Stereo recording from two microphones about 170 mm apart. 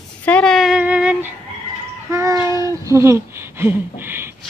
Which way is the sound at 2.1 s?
15° right (ahead or behind).